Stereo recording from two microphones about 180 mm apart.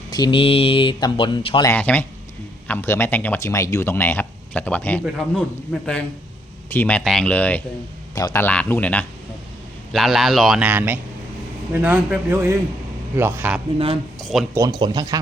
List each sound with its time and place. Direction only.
0.1 s speech: 25° left (ahead or behind)
1.6 s a man's voice: 10° left (ahead or behind); by 13.6 s 10° right (ahead or behind)
13.7 s speech: 30° right (ahead or behind)
14.2 s speech: centre (ahead or behind)
14.5 s speech: 20° right (ahead or behind)